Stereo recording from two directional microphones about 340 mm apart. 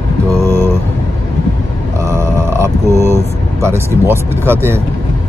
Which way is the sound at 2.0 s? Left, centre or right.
Centre.